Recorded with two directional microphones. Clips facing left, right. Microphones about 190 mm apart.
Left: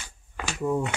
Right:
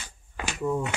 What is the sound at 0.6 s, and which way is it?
Speech, 15° left (ahead or behind).